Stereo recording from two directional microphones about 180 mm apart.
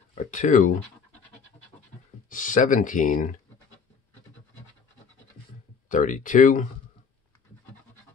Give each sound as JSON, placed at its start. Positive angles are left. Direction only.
{"t": 0.1, "sound": "speech", "side_deg": 45}
{"t": 2.2, "sound": "speech", "side_deg": 45}
{"t": 5.9, "sound": "speech", "side_deg": 45}